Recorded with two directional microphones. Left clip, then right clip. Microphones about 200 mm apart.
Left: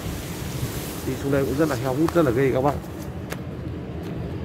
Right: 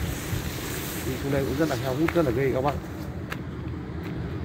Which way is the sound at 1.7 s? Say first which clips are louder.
Left 3 dB; 15° left (ahead or behind).